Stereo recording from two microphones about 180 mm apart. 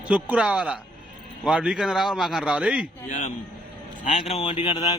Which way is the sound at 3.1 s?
45° left (ahead or behind).